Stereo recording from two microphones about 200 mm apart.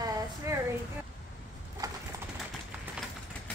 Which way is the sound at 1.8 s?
15° right (ahead or behind).